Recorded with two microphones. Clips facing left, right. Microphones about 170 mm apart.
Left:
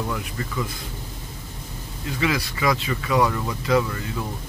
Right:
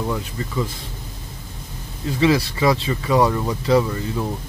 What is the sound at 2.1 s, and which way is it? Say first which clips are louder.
Speech: right 7 dB; 30° right (ahead or behind).